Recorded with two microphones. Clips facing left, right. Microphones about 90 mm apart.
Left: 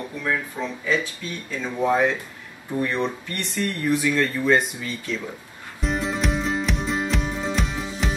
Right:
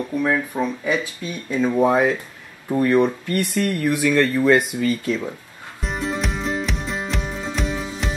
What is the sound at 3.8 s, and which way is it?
Speech, 65° right (ahead or behind).